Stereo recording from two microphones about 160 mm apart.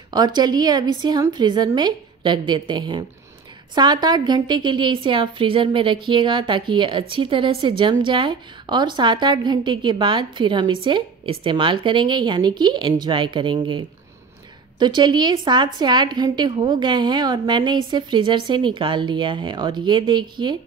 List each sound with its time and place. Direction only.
0.1 s a woman's voice: 25° right (ahead or behind)